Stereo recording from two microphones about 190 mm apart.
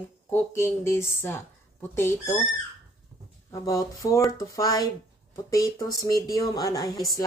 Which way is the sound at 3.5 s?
20° left (ahead or behind).